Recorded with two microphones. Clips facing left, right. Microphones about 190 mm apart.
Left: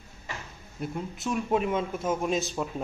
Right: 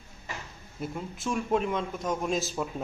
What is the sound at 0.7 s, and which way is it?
A man's voice, centre (ahead or behind).